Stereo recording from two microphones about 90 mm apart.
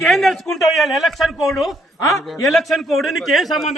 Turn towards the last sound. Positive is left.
turn(degrees=0)  # may be behind; listen again after turning